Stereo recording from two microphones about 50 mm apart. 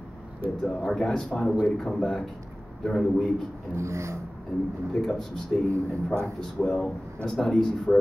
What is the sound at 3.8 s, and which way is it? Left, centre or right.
Speech, right.